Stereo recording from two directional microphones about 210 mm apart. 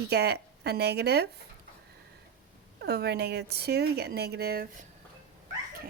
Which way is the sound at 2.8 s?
50° right (ahead or behind).